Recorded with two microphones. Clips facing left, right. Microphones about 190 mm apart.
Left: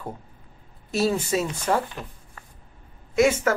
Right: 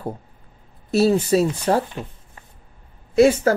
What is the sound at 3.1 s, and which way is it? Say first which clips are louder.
Speech: right 5 dB; 35° right (ahead or behind).